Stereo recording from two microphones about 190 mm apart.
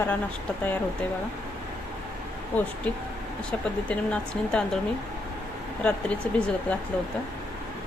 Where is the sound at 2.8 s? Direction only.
5° left (ahead or behind).